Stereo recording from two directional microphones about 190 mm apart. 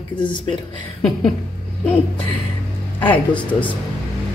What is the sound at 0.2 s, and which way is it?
Speech, 25° left (ahead or behind).